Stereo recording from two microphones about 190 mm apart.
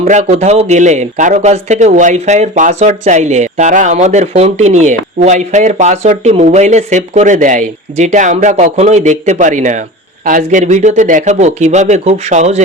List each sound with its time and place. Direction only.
0.0 s a man's voice: 35° right (ahead or behind)